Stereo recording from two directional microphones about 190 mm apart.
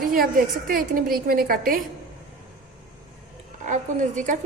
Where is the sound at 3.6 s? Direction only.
40° right (ahead or behind).